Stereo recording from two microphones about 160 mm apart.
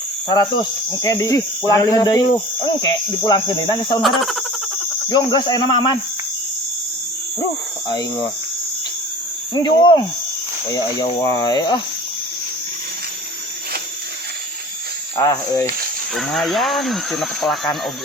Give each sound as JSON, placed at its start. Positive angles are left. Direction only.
{"t": 0.3, "sound": "speech", "side_deg": 25}
{"t": 4.0, "sound": "speech", "side_deg": 0}
{"t": 5.0, "sound": "speech", "side_deg": 25}
{"t": 9.6, "sound": "speech", "side_deg": 25}
{"t": 15.1, "sound": "speech", "side_deg": 20}
{"t": 16.1, "sound": "speech", "side_deg": 0}